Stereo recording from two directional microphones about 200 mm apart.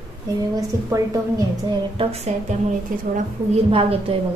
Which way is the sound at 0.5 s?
20° right (ahead or behind).